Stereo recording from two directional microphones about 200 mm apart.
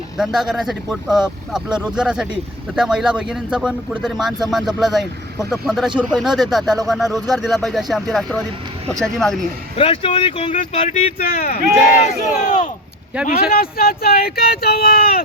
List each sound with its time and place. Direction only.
0.2 s speech: centre (ahead or behind)
9.7 s speech: 25° left (ahead or behind); by 11.6 s 50° left (ahead or behind)
12.5 s speech: 40° left (ahead or behind)
13.1 s speech: 5° right (ahead or behind)
13.5 s speech: 50° left (ahead or behind)